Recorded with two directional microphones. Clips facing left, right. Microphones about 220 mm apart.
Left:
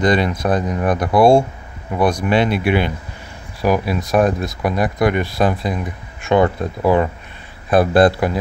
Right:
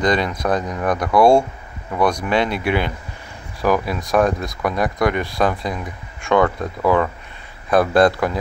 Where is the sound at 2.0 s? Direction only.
10° left (ahead or behind).